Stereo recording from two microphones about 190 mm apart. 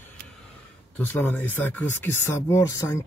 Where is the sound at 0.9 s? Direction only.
10° left (ahead or behind).